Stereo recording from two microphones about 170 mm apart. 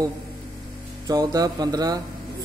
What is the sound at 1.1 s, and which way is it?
Music, 20° right (ahead or behind).